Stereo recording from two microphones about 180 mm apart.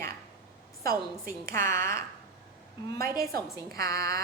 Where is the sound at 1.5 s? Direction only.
15° left (ahead or behind).